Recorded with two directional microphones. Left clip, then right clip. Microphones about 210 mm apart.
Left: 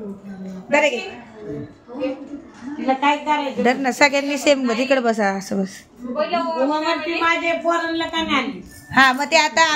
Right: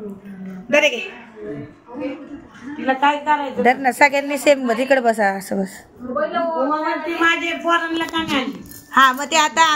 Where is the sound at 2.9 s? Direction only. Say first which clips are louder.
Right 2 dB; 5° left (ahead or behind).